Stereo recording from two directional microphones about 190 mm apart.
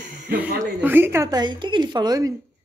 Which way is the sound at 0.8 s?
10° right (ahead or behind).